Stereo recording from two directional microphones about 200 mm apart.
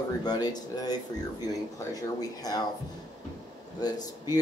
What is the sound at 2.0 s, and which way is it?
Speech, 20° left (ahead or behind).